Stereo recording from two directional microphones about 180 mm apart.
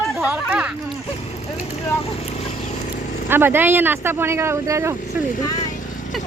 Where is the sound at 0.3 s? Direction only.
5° right (ahead or behind).